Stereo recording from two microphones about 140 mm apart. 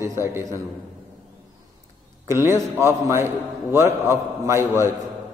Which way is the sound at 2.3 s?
20° right (ahead or behind).